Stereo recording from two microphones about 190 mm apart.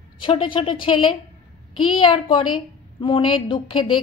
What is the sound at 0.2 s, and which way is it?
A woman's voice, 25° left (ahead or behind).